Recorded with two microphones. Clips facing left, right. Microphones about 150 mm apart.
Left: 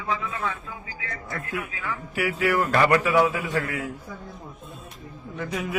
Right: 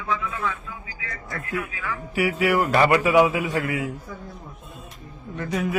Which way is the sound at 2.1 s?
Centre (ahead or behind).